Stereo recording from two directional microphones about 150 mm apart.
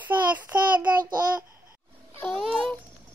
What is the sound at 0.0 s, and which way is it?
Child singing, 10° right (ahead or behind).